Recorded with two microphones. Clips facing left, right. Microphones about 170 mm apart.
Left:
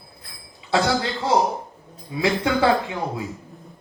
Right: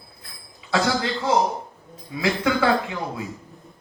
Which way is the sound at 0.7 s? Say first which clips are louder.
Left 1 dB; 25° left (ahead or behind).